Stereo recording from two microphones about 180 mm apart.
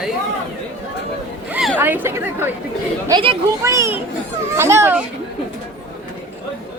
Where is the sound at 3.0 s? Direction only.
25° right (ahead or behind).